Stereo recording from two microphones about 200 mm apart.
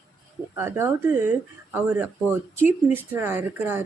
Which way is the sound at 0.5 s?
10° right (ahead or behind).